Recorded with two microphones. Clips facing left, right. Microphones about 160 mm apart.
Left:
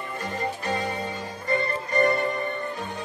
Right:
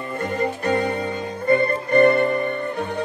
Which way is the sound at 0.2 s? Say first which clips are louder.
Right 7 dB; 60° right (ahead or behind).